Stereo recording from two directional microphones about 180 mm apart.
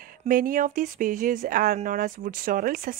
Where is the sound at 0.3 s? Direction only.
50° right (ahead or behind).